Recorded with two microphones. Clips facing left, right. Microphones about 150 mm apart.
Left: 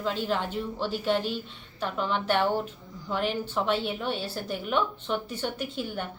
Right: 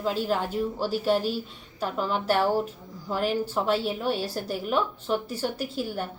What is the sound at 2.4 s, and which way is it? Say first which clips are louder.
Speech: right 2 dB; 5° right (ahead or behind).